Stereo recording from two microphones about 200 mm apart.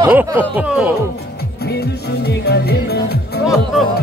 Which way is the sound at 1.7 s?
55° left (ahead or behind).